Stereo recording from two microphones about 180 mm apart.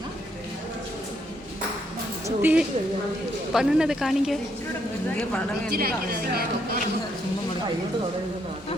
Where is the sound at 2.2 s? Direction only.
10° right (ahead or behind).